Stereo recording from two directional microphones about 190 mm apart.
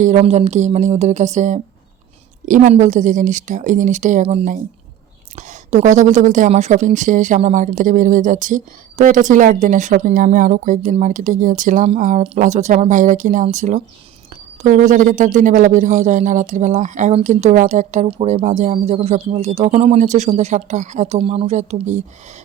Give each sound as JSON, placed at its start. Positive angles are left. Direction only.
{"t": 0.0, "sound": "speech", "side_deg": -35}